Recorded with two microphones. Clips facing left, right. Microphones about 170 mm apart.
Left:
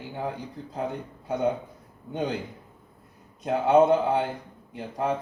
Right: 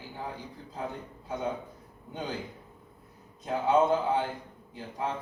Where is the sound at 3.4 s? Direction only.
75° left (ahead or behind).